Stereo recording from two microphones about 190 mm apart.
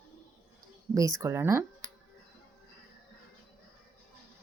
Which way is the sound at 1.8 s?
40° right (ahead or behind).